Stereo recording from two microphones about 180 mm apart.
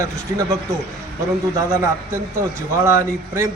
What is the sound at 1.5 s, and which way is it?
A man's voice, 15° right (ahead or behind).